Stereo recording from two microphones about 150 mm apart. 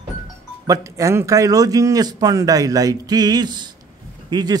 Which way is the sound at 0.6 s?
20° right (ahead or behind).